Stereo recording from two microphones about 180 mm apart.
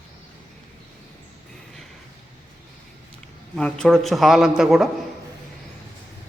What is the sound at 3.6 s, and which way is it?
A man's voice, 5° left (ahead or behind).